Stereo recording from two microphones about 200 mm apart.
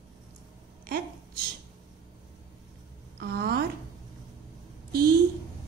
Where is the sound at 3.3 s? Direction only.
50° right (ahead or behind).